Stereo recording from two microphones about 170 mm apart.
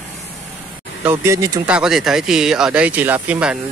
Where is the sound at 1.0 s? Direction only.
15° right (ahead or behind).